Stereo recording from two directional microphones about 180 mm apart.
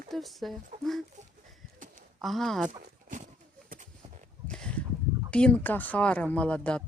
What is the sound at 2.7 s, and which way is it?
Horse, 45° right (ahead or behind).